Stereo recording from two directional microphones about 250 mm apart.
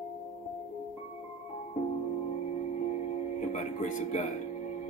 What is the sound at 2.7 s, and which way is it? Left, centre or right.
Music, left.